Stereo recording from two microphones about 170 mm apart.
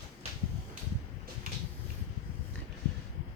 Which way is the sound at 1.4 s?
55° right (ahead or behind).